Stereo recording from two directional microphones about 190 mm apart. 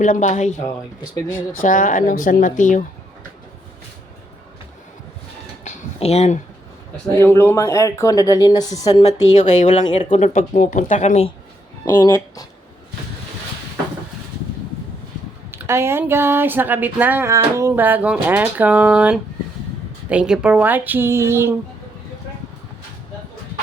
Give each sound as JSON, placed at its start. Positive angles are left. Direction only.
{"t": 0.0, "sound": "speech", "side_deg": 40}
{"t": 5.6, "sound": "a sound", "side_deg": 35}
{"t": 7.2, "sound": "a woman's voice", "side_deg": 15}
{"t": 9.3, "sound": "speech", "side_deg": 40}
{"t": 11.9, "sound": "speech", "side_deg": 15}
{"t": 15.5, "sound": "speech", "side_deg": -15}